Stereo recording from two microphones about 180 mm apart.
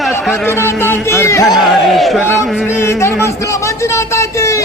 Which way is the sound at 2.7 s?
15° left (ahead or behind).